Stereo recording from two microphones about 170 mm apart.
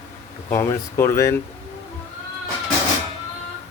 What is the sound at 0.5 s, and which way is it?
Speech, 15° left (ahead or behind).